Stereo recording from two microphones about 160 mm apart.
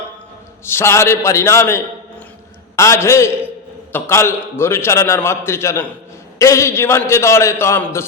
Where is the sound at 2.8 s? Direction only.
15° left (ahead or behind).